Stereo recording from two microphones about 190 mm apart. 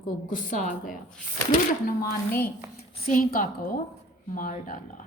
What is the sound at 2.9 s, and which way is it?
A woman's voice, 40° left (ahead or behind).